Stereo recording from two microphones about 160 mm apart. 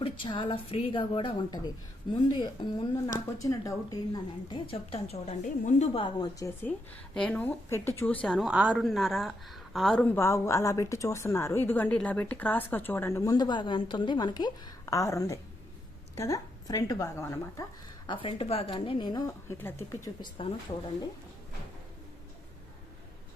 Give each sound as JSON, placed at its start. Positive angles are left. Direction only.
{"t": 0.0, "sound": "a woman's voice", "side_deg": 35}
{"t": 5.9, "sound": "speech", "side_deg": 30}
{"t": 6.9, "sound": "a woman's voice", "side_deg": 5}
{"t": 18.0, "sound": "a woman's voice", "side_deg": 30}
{"t": 20.4, "sound": "a woman's voice", "side_deg": 35}